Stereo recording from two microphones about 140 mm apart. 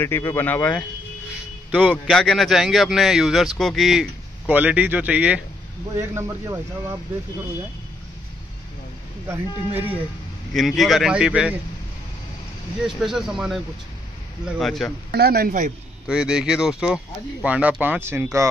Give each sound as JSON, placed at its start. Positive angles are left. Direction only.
{"t": 0.0, "sound": "speech", "side_deg": 15}
{"t": 2.0, "sound": "speech", "side_deg": 5}
{"t": 4.5, "sound": "speech", "side_deg": -10}
{"t": 5.9, "sound": "a man's voice", "side_deg": -20}
{"t": 9.3, "sound": "speech", "side_deg": -15}
{"t": 10.5, "sound": "speech", "side_deg": 0}
{"t": 12.8, "sound": "speech", "side_deg": -5}
{"t": 15.2, "sound": "a man's voice", "side_deg": -90}
{"t": 16.1, "sound": "speech", "side_deg": -5}